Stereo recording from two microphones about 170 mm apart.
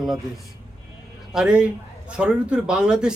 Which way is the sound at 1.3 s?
5° right (ahead or behind).